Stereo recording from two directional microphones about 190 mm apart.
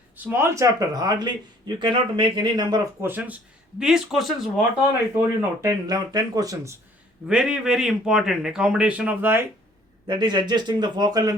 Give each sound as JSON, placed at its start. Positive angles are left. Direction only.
{"t": 0.2, "sound": "a man's voice", "side_deg": -10}
{"t": 3.1, "sound": "speech", "side_deg": -10}
{"t": 4.9, "sound": "speech", "side_deg": -10}
{"t": 7.3, "sound": "speech", "side_deg": -5}
{"t": 10.1, "sound": "a man's voice", "side_deg": -25}